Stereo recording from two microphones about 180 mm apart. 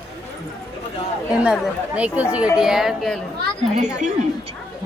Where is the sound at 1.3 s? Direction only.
5° right (ahead or behind).